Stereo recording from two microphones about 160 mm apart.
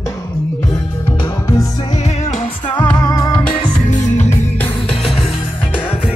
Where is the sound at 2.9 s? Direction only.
25° left (ahead or behind).